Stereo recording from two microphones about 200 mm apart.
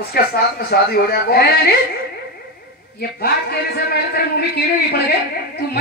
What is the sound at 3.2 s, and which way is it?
Speech, 50° left (ahead or behind).